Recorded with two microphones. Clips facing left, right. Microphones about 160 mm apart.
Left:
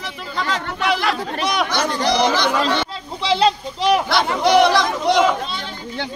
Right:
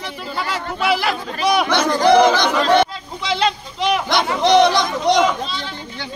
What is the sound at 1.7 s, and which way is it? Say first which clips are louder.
Speech: right 5 dB; 65° right (ahead or behind).